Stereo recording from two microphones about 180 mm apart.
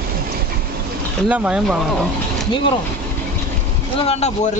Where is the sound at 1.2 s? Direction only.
5° right (ahead or behind).